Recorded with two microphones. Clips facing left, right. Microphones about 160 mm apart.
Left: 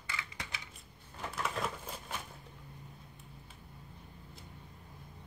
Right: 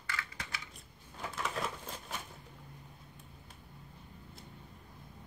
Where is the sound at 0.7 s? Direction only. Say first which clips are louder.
Right 1 dB; centre (ahead or behind).